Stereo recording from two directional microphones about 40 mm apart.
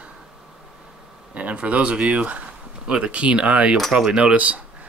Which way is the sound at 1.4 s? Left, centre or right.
Right.